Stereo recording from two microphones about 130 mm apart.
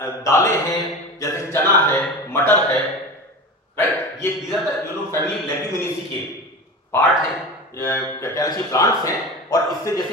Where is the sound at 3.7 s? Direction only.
15° left (ahead or behind).